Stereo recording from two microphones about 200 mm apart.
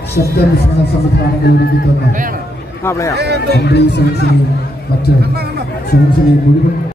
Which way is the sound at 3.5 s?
55° left (ahead or behind).